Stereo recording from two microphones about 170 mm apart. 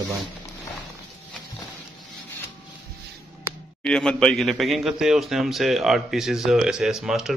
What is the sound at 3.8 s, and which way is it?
A man's voice, 5° left (ahead or behind).